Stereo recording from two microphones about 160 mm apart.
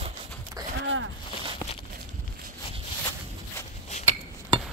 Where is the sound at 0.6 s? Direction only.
20° right (ahead or behind).